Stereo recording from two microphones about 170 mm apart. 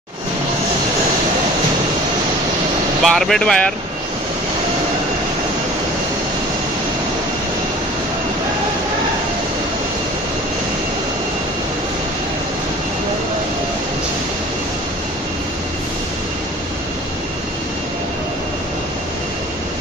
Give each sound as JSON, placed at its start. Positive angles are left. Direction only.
{"t": 3.0, "sound": "speech", "side_deg": 0}